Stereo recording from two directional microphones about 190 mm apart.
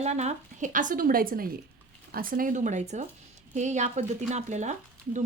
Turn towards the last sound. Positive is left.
turn(degrees=-40)  # may be behind; listen again after turning